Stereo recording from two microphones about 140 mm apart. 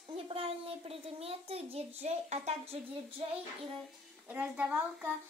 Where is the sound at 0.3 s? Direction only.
45° right (ahead or behind).